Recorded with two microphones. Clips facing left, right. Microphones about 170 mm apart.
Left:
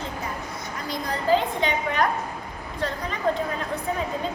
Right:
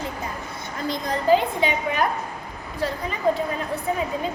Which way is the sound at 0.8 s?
15° right (ahead or behind).